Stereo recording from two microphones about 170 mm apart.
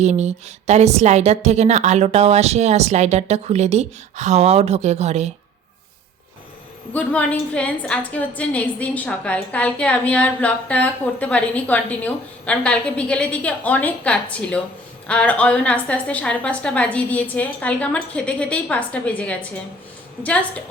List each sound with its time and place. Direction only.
0.0 s a woman's voice: 40° right (ahead or behind)
6.9 s a woman's voice: 10° left (ahead or behind)